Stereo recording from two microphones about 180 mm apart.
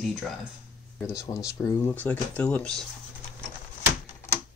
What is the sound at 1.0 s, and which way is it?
Speech, 15° left (ahead or behind).